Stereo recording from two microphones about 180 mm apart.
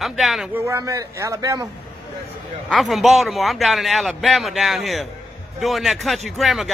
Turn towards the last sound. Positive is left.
turn(degrees=0)  # may be behind; listen again after turning